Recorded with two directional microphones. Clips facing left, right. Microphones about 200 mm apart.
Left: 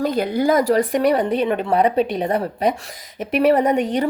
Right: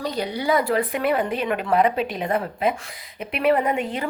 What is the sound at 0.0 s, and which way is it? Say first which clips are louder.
A woman's voice: left 7 dB; 50° left (ahead or behind).